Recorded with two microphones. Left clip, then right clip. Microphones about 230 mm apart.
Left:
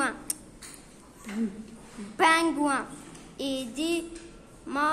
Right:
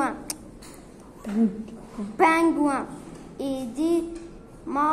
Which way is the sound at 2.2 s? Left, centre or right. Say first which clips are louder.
Right 3 dB; left.